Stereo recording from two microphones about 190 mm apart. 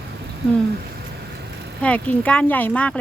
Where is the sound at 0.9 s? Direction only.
60° right (ahead or behind).